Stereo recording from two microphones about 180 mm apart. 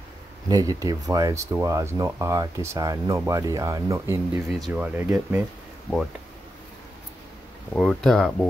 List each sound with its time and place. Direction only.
0.5 s speech: 20° right (ahead or behind)
4.5 s speech: centre (ahead or behind)
7.7 s speech: 5° left (ahead or behind)